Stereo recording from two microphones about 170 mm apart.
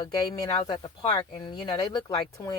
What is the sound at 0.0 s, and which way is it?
Speech, 25° left (ahead or behind).